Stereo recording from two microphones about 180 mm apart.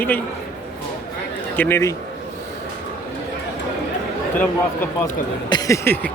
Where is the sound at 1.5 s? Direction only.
10° left (ahead or behind).